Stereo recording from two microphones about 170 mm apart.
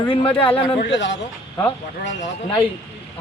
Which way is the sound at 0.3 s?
30° left (ahead or behind).